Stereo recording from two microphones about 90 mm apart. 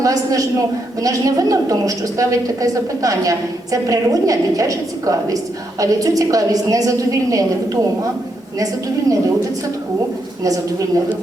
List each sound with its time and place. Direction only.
0.0 s a woman's voice: 40° right (ahead or behind)
10.4 s a woman's voice: 40° right (ahead or behind)